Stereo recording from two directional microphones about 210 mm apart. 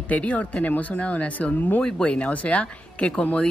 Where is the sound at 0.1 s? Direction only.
5° left (ahead or behind).